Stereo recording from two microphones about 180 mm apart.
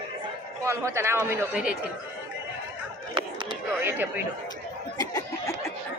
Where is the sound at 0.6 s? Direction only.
15° right (ahead or behind).